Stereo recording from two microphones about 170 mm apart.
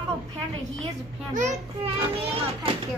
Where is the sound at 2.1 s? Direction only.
35° right (ahead or behind).